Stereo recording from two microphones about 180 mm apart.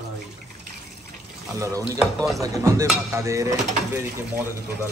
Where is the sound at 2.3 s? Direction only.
20° right (ahead or behind).